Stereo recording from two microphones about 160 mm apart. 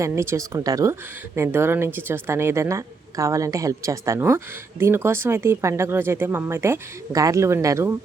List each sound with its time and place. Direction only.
0.0 s speech: 20° right (ahead or behind)